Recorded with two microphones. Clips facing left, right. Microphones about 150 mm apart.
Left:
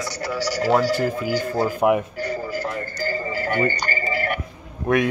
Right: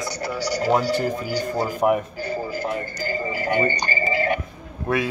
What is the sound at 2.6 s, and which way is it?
Speech, 15° right (ahead or behind).